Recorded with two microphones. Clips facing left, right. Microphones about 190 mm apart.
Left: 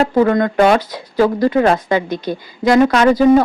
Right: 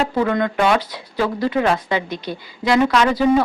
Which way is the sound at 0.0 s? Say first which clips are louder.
Left 6 dB; 45° left (ahead or behind).